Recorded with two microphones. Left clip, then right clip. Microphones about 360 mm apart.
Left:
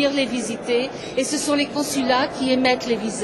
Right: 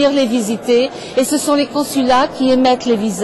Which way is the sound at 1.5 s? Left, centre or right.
Right.